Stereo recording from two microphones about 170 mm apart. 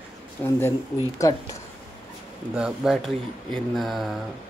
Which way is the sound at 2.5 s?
5° right (ahead or behind).